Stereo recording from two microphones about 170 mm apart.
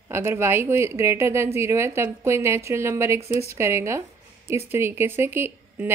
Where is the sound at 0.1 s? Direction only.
15° right (ahead or behind).